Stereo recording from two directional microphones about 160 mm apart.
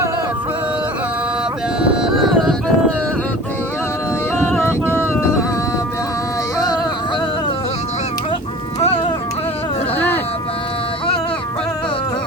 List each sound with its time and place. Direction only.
1.8 s music: 5° right (ahead or behind)
4.4 s a sound: 15° left (ahead or behind)
8.8 s music: 40° left (ahead or behind)